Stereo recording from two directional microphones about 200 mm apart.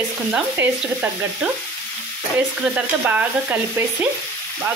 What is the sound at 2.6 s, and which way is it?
Speech, 10° right (ahead or behind).